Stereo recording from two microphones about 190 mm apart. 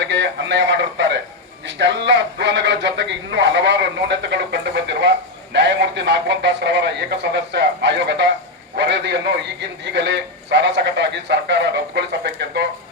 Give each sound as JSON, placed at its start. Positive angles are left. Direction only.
{"t": 0.0, "sound": "a man's voice", "side_deg": -70}